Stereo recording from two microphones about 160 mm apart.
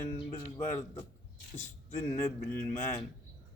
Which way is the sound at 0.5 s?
15° left (ahead or behind).